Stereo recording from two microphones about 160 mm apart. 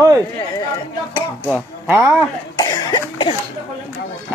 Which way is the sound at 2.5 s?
25° left (ahead or behind).